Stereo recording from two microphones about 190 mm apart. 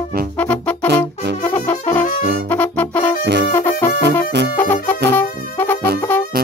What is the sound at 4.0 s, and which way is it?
Music, 65° right (ahead or behind).